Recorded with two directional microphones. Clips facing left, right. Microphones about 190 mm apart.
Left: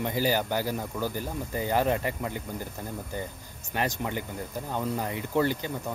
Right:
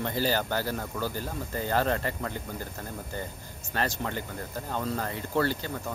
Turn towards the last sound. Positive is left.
turn(degrees=15)  # may be behind; listen again after turning